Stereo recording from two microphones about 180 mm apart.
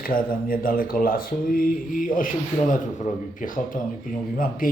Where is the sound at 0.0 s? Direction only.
50° left (ahead or behind).